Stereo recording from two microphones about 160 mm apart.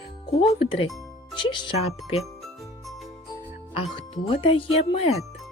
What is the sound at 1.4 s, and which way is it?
Speech, 30° left (ahead or behind).